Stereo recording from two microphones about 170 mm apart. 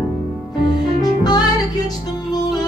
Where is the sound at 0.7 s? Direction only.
25° left (ahead or behind).